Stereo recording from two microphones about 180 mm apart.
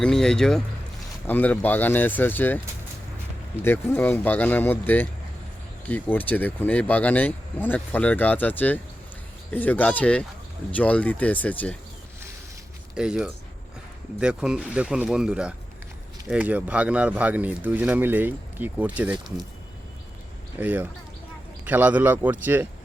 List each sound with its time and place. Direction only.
0.0 s speech: 5° left (ahead or behind)
3.6 s speech: 10° left (ahead or behind)
13.0 s speech: 5° right (ahead or behind)
20.6 s speech: 10° right (ahead or behind)